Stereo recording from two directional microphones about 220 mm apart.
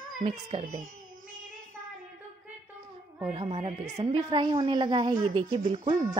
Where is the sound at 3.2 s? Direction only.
25° right (ahead or behind).